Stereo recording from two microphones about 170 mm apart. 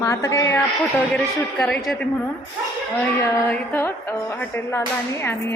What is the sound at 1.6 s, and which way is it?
Speech, 5° left (ahead or behind).